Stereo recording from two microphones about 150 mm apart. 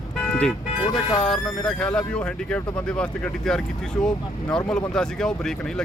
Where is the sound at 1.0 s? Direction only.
30° left (ahead or behind).